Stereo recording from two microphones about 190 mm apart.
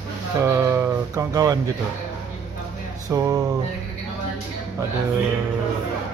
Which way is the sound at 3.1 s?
20° right (ahead or behind).